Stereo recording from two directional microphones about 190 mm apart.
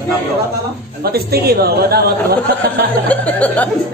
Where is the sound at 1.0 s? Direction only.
55° right (ahead or behind).